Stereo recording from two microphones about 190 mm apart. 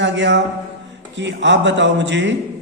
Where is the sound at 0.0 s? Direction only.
70° right (ahead or behind).